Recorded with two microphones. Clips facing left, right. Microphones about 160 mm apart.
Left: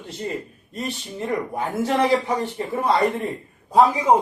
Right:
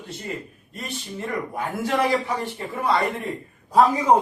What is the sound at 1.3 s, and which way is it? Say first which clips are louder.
Speech: left 3 dB; 25° left (ahead or behind).